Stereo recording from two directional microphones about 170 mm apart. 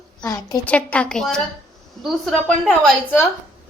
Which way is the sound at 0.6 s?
10° left (ahead or behind).